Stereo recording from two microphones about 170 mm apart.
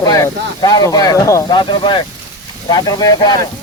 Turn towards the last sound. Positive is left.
turn(degrees=25)  # may be behind; listen again after turning